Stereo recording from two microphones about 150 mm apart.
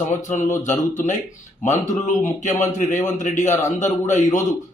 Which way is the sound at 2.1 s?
55° left (ahead or behind).